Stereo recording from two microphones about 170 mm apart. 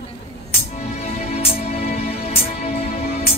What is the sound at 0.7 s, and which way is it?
Music, 40° left (ahead or behind).